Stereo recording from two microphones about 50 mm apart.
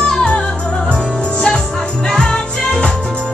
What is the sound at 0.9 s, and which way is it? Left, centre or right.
Music, left.